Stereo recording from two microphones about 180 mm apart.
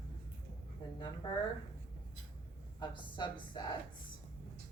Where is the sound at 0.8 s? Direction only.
25° left (ahead or behind).